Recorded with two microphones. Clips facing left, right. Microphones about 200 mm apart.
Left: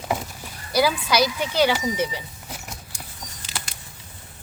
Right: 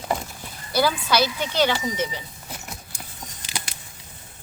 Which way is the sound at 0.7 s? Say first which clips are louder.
Left 1 dB; 10° left (ahead or behind).